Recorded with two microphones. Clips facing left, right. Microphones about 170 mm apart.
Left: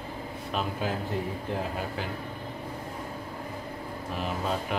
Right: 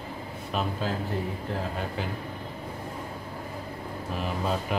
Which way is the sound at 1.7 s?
Centre (ahead or behind).